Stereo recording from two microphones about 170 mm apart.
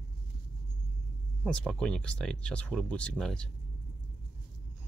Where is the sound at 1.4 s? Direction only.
5° left (ahead or behind).